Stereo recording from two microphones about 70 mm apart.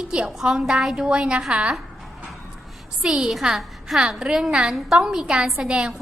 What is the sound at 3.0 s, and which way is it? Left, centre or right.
A woman's voice, centre.